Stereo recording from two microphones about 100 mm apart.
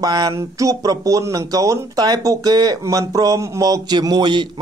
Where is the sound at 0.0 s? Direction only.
45° right (ahead or behind).